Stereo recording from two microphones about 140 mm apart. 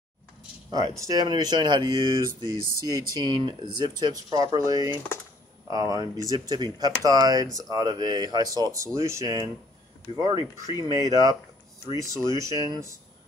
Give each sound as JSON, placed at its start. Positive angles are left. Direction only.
{"t": 0.7, "sound": "speech", "side_deg": -25}